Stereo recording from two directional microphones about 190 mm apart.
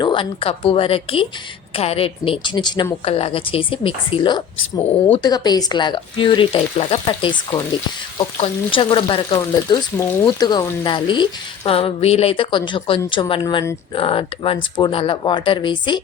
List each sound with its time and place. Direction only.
0.0 s speech: 25° left (ahead or behind)